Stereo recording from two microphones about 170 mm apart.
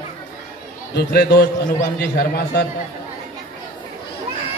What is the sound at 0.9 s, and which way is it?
A man's voice, 70° left (ahead or behind).